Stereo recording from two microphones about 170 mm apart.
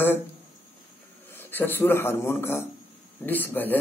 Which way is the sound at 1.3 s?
10° left (ahead or behind).